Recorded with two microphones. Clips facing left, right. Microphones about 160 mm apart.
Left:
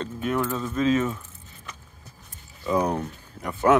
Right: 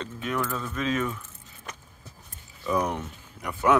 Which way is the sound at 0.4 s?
20° left (ahead or behind).